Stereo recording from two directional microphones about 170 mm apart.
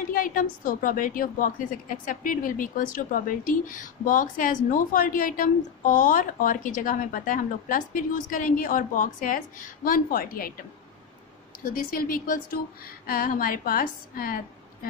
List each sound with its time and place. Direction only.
0.1 s a woman's voice: 55° left (ahead or behind)
11.7 s a woman's voice: 60° left (ahead or behind)